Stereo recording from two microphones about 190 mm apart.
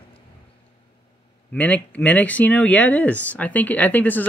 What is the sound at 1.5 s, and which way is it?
Speech, 5° left (ahead or behind).